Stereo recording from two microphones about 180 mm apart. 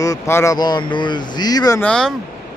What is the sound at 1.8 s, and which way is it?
Speech, 5° left (ahead or behind).